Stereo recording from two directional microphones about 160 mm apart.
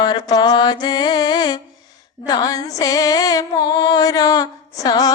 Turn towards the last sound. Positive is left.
turn(degrees=25)  # may be behind; listen again after turning